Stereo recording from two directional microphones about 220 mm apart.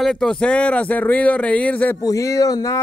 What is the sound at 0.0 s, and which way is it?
Speech, centre (ahead or behind).